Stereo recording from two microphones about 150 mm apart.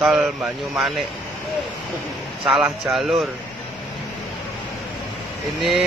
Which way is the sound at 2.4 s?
Centre (ahead or behind).